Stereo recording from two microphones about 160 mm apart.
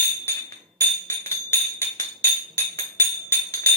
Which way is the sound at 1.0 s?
15° left (ahead or behind).